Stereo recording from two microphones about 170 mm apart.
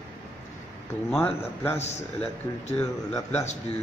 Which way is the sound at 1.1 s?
10° left (ahead or behind).